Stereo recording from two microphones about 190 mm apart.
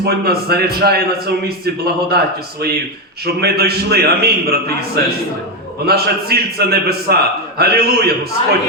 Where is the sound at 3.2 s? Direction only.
55° right (ahead or behind).